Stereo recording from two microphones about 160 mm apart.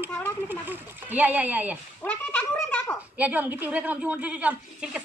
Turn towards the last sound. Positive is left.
turn(degrees=-10)  # may be behind; listen again after turning